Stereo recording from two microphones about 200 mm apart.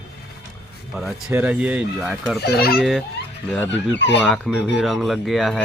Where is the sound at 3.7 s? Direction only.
60° left (ahead or behind).